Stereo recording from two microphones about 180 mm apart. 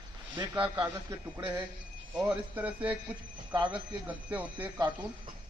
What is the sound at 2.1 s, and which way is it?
Speech, 10° right (ahead or behind).